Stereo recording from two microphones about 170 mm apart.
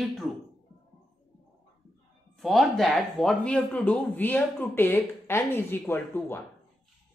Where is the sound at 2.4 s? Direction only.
Centre (ahead or behind).